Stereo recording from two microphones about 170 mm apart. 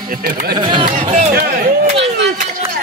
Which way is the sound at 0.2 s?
65° right (ahead or behind).